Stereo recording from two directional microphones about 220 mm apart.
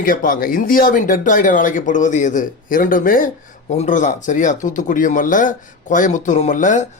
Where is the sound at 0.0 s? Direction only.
40° left (ahead or behind).